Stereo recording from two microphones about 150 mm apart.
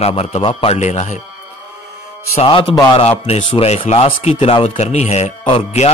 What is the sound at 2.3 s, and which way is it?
Speech, 35° left (ahead or behind).